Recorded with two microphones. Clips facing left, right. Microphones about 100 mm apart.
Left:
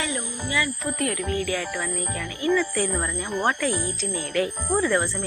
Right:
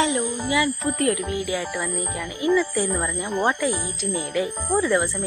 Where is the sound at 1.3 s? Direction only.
15° right (ahead or behind).